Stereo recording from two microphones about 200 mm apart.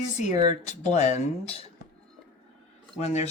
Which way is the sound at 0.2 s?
35° left (ahead or behind).